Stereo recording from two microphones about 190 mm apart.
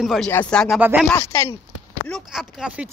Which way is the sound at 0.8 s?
10° right (ahead or behind).